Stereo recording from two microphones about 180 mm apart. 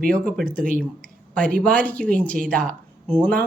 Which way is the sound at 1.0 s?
5° left (ahead or behind).